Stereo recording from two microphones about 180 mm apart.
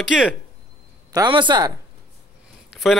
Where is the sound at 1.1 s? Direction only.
25° right (ahead or behind).